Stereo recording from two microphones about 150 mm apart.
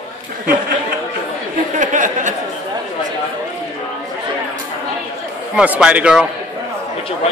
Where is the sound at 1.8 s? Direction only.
55° right (ahead or behind).